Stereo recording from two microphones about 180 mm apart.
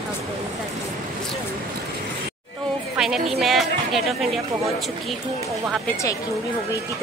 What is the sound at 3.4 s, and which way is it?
Speech, centre (ahead or behind).